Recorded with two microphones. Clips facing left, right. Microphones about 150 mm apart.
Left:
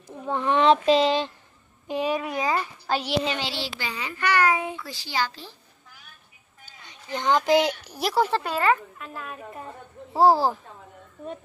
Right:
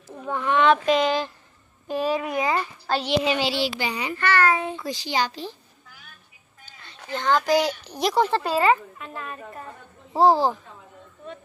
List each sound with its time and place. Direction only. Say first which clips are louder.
0.3 s child singing: even; 30° left (ahead or behind)
2.1 s a child's voice: right 2 dB; 15° right (ahead or behind)
2.9 s a child's voice: right 2 dB; 10° left (ahead or behind)
3.3 s a child's voice: right 6 dB; 10° right (ahead or behind)
4.2 s a child's voice: right 1 dB; 15° left (ahead or behind)
4.8 s a child's voice: right 3 dB; 20° right (ahead or behind)
6.6 s a sound: even; 15° left (ahead or behind)
7.1 s child singing: even; 15° left (ahead or behind)
7.8 s a child's voice: right 2 dB; 5° left (ahead or behind)
8.5 s a child's voice: right 3 dB; 10° right (ahead or behind)
8.9 s a woman's voice: right 1 dB; centre (ahead or behind)